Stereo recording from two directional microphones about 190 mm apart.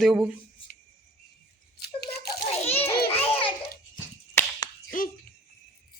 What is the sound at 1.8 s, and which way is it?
Toothbrush, 55° left (ahead or behind).